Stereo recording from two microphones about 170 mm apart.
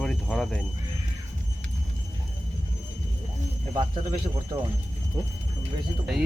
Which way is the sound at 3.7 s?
25° right (ahead or behind).